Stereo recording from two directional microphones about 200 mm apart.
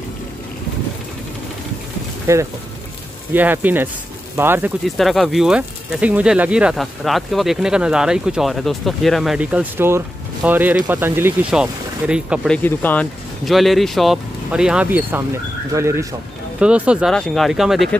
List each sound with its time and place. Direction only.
2.3 s speech: 15° right (ahead or behind)
12.6 s speech: 10° left (ahead or behind)